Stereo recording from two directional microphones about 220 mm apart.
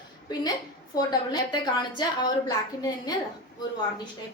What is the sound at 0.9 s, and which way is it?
Speech, 15° left (ahead or behind).